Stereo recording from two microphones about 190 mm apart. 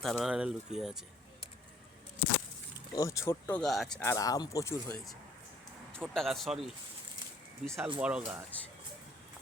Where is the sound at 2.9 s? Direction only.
15° left (ahead or behind).